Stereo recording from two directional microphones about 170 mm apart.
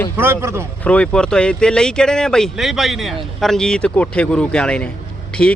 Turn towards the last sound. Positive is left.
turn(degrees=5)  # may be behind; listen again after turning